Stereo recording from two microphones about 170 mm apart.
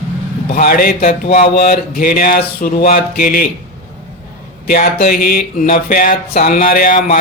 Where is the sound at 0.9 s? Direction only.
45° left (ahead or behind).